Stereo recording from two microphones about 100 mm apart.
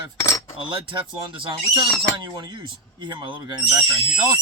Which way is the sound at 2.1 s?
50° right (ahead or behind).